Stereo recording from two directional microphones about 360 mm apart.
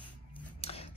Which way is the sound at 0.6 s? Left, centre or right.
Centre.